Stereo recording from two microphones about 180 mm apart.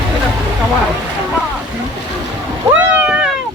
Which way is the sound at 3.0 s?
5° right (ahead or behind).